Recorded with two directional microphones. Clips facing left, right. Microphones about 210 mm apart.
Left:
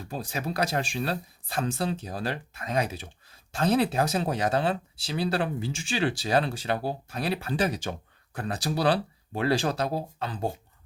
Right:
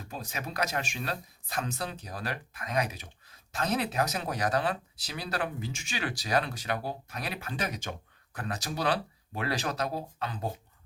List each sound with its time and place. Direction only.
0.1 s speech: 30° left (ahead or behind)